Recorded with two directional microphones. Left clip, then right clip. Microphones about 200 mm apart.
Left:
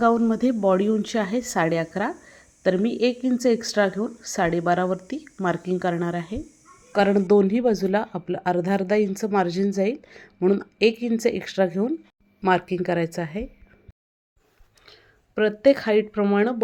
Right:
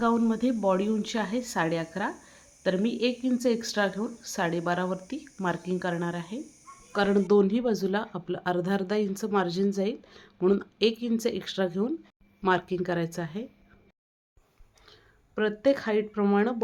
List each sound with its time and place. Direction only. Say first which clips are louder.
0.0 s speech: left 6 dB; 20° left (ahead or behind)
15.4 s speech: left 6 dB; 20° left (ahead or behind)